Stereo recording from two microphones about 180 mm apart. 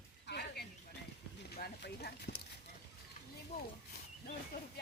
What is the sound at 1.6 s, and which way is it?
Speech, 60° left (ahead or behind).